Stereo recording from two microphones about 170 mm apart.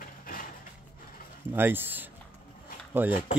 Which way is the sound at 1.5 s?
10° right (ahead or behind).